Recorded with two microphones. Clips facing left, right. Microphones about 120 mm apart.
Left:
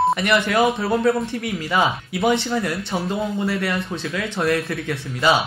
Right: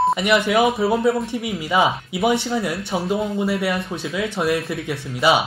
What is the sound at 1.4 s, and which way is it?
Speech, 15° right (ahead or behind).